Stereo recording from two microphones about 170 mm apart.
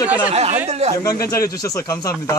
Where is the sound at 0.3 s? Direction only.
40° right (ahead or behind).